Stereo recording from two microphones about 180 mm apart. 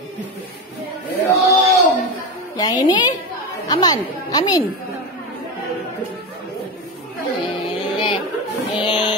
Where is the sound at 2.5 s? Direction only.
20° left (ahead or behind).